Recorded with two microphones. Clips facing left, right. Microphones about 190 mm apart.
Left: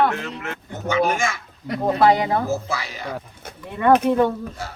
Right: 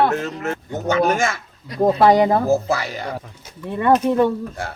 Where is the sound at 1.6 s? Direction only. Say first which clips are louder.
Right 4 dB; 60° left (ahead or behind).